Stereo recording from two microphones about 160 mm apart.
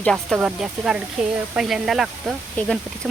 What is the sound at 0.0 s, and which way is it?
Speech, 5° left (ahead or behind).